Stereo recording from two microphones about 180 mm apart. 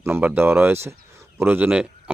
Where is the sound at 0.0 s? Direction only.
10° right (ahead or behind).